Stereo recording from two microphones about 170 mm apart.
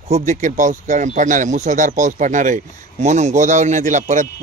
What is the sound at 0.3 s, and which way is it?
Speech, 45° right (ahead or behind).